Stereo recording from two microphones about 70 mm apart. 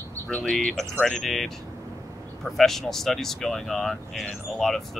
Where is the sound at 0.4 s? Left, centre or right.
Centre.